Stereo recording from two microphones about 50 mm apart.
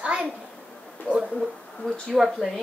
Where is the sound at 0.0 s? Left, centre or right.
Centre.